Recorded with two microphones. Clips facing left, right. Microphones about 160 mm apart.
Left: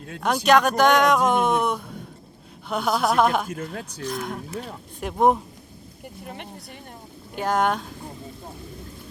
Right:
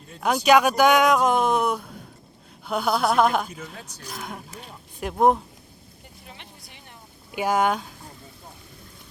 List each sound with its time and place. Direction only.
0.2 s speech: 5° right (ahead or behind)
3.5 s speech: 55° left (ahead or behind)
4.0 s speech: centre (ahead or behind)
6.2 s speech: 55° left (ahead or behind)
7.3 s speech: 5° right (ahead or behind)